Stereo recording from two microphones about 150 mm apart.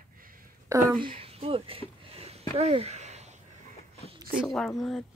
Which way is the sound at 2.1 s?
40° right (ahead or behind).